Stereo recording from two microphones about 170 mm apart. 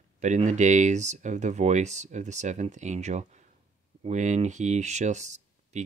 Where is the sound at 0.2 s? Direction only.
45° right (ahead or behind).